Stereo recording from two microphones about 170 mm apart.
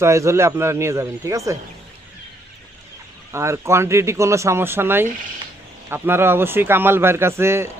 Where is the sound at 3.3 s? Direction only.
15° right (ahead or behind).